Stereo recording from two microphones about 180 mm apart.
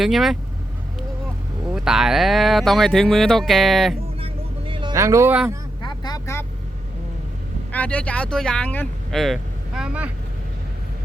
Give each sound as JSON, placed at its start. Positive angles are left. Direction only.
{"t": 0.0, "sound": "speech", "side_deg": 0}
{"t": 1.6, "sound": "speech", "side_deg": -5}
{"t": 4.2, "sound": "vehicle", "side_deg": -30}
{"t": 5.8, "sound": "vehicle", "side_deg": 25}
{"t": 7.7, "sound": "speech", "side_deg": 10}